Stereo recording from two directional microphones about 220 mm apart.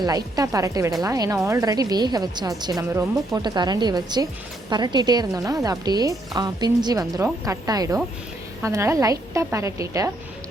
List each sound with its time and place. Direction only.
0.0 s a woman's voice: 15° right (ahead or behind)